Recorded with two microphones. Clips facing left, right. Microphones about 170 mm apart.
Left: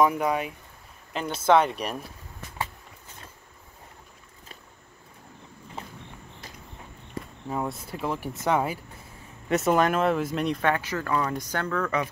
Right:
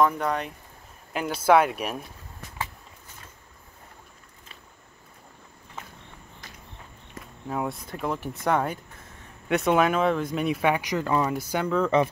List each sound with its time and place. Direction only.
0.0 s speech: 5° left (ahead or behind)
1.1 s speech: 5° right (ahead or behind)
5.8 s walk: 30° left (ahead or behind)
7.4 s speech: centre (ahead or behind); by 12.1 s 25° right (ahead or behind)